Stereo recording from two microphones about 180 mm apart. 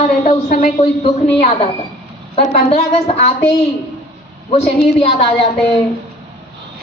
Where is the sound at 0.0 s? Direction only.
45° left (ahead or behind).